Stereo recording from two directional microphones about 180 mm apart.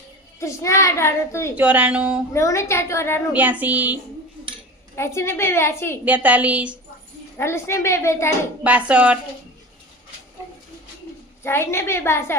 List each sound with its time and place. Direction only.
0.3 s a child's voice: 15° left (ahead or behind)
1.5 s a woman's voice: 10° right (ahead or behind)
2.3 s a child's voice: 15° left (ahead or behind)
3.3 s a woman's voice: 10° right (ahead or behind)
4.9 s a child's voice: 15° left (ahead or behind)
6.1 s a woman's voice: 10° right (ahead or behind)
7.3 s a child's voice: 15° left (ahead or behind)
8.6 s a woman's voice: 10° right (ahead or behind)
11.4 s a child's voice: 15° left (ahead or behind)